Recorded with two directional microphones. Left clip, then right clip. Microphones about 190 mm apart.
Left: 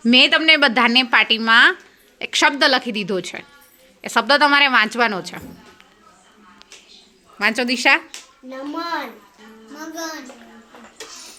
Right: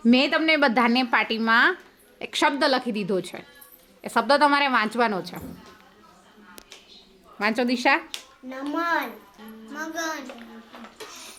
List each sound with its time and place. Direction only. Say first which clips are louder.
0.0 s a woman's voice: left 7 dB; centre (ahead or behind)
7.3 s a woman's voice: left 5 dB; centre (ahead or behind)